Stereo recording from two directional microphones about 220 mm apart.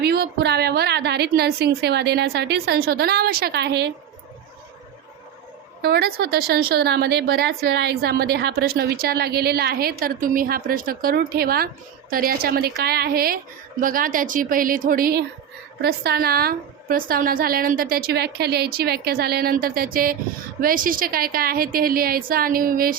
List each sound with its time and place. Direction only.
0.0 s a woman's voice: 45° right (ahead or behind)
5.8 s a woman's voice: 45° right (ahead or behind)